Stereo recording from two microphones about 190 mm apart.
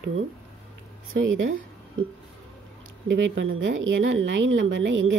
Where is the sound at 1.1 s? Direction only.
85° right.